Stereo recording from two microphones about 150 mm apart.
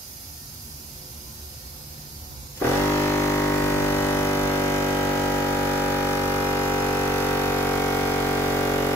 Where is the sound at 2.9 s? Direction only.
15° left (ahead or behind).